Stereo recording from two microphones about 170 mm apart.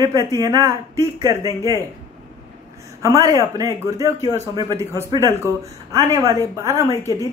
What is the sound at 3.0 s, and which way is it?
A man's voice, 20° right (ahead or behind).